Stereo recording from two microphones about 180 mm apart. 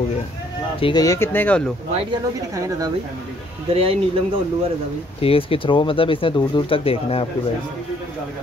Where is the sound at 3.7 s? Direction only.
30° right (ahead or behind).